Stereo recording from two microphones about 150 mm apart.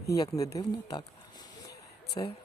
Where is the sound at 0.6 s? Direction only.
30° left (ahead or behind).